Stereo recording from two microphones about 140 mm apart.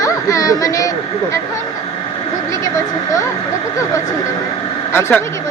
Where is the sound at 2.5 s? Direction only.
25° left (ahead or behind).